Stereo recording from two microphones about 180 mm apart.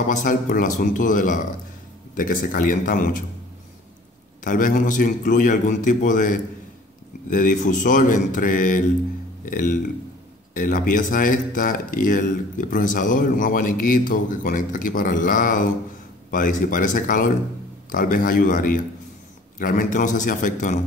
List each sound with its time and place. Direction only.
0.1 s speech: 45° left (ahead or behind)
4.5 s speech: 50° left (ahead or behind)